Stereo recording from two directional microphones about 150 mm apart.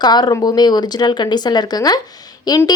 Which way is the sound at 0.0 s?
30° left (ahead or behind).